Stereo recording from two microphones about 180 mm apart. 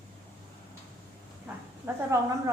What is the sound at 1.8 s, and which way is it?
Speech, 15° right (ahead or behind).